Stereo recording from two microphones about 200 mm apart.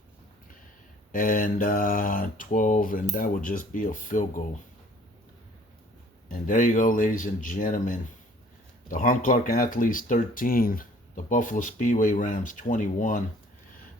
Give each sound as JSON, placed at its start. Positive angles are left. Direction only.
{"t": 1.1, "sound": "mantra", "side_deg": 45}
{"t": 3.2, "sound": "speech", "side_deg": 45}
{"t": 6.2, "sound": "mantra", "side_deg": 40}
{"t": 8.9, "sound": "speech", "side_deg": 40}